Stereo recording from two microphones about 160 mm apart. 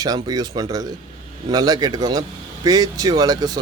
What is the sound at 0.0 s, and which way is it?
Speech, 25° right (ahead or behind).